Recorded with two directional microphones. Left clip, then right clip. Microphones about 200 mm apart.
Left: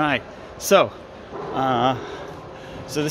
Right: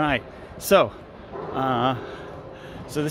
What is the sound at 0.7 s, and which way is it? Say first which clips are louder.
A man's voice: left 2 dB; 10° right (ahead or behind).